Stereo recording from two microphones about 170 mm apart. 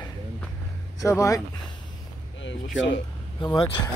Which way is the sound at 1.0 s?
20° left (ahead or behind).